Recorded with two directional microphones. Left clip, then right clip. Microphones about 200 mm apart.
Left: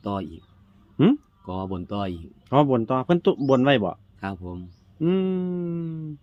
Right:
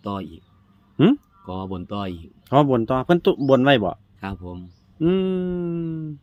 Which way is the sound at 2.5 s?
35° right (ahead or behind).